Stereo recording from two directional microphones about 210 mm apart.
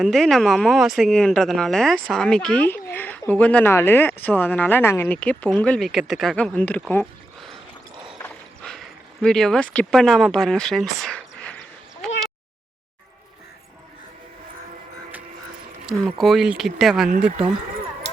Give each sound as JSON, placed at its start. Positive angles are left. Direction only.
{"t": 0.0, "sound": "speech", "side_deg": 0}
{"t": 8.2, "sound": "a sound", "side_deg": 5}
{"t": 15.9, "sound": "speech", "side_deg": 0}